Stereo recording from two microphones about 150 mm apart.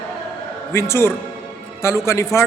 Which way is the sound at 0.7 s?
15° left (ahead or behind).